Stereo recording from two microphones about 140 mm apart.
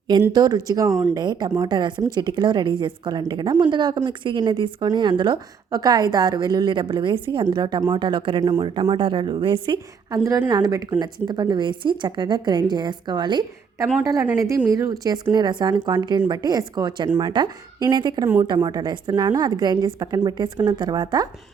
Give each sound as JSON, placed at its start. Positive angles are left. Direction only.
{"t": 0.3, "sound": "a woman's voice", "side_deg": -25}
{"t": 0.9, "sound": "speech", "side_deg": -5}
{"t": 1.1, "sound": "a woman's voice", "side_deg": -30}
{"t": 10.1, "sound": "a woman's voice", "side_deg": -25}